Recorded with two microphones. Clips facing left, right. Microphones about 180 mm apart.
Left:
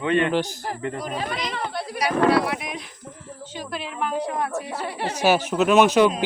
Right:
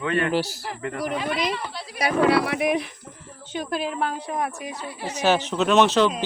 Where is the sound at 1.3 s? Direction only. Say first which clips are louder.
Right 2 dB; 55° left (ahead or behind).